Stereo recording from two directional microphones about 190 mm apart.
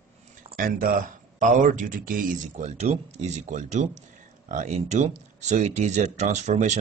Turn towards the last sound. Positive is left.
turn(degrees=-40)  # may be behind; listen again after turning